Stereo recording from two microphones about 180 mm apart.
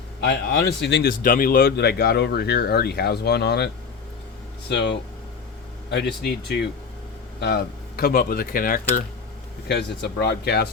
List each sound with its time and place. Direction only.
0.2 s speech: 60° left (ahead or behind)
1.2 s speech: 50° left (ahead or behind); by 3.7 s 65° left (ahead or behind)
4.7 s speech: 70° left (ahead or behind); by 9.0 s 50° left (ahead or behind)
9.6 s speech: 70° left (ahead or behind)